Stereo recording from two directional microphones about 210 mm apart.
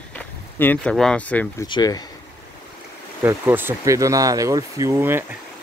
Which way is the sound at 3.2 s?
10° right (ahead or behind).